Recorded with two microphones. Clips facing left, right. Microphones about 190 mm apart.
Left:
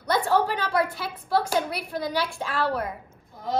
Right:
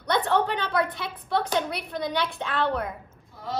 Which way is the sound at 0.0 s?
5° left (ahead or behind).